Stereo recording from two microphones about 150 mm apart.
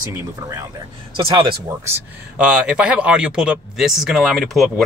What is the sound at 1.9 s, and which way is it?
Speech, 5° right (ahead or behind).